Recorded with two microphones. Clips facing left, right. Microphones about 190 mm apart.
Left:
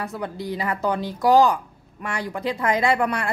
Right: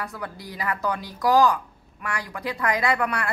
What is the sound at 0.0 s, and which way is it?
Speech, 25° left (ahead or behind).